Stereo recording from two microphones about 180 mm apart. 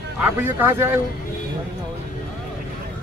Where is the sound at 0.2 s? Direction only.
10° right (ahead or behind).